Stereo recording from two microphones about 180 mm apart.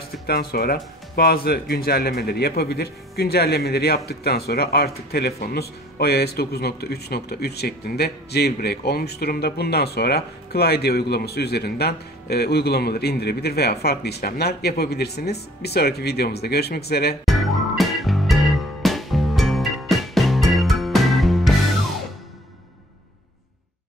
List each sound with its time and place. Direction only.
0.3 s speech: 60° left (ahead or behind)
17.2 s music: centre (ahead or behind)